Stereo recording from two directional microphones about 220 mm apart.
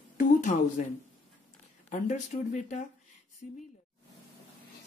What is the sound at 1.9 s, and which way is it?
Speech, 35° left (ahead or behind).